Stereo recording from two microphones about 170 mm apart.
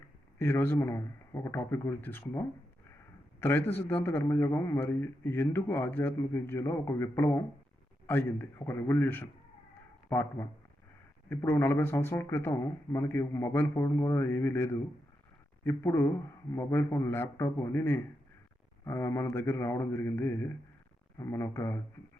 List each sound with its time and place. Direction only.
0.3 s a man's voice: 15° left (ahead or behind)